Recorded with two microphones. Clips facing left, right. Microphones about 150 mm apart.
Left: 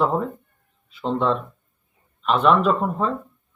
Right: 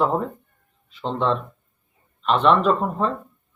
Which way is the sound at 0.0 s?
Centre (ahead or behind).